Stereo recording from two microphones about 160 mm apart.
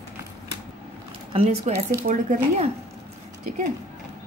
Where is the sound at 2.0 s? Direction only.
50° right (ahead or behind).